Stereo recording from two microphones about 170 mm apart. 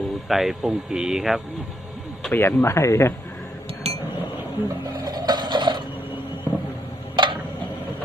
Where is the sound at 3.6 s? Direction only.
35° right (ahead or behind).